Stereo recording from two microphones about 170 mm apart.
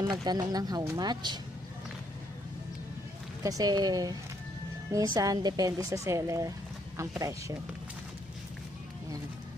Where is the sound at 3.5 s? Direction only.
20° right (ahead or behind).